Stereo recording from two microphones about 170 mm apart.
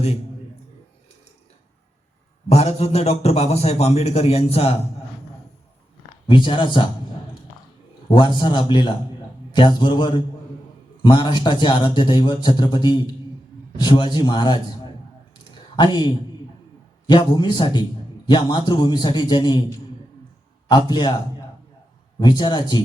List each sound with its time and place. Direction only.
2.5 s a man's voice: 40° left (ahead or behind)
6.2 s a man's voice: 30° left (ahead or behind)
8.0 s a man's voice: 25° left (ahead or behind)
15.7 s a man's voice: 25° left (ahead or behind)
20.7 s a man's voice: 25° left (ahead or behind)
22.2 s a man's voice: 25° left (ahead or behind)